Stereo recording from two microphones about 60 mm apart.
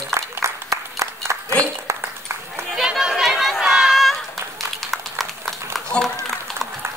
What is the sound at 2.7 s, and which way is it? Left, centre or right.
Chatter, centre.